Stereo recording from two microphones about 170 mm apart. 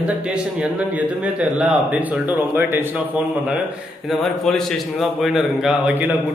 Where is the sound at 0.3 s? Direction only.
5° right (ahead or behind).